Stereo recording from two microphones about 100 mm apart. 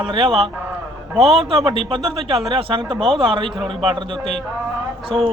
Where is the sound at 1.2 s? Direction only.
80° right.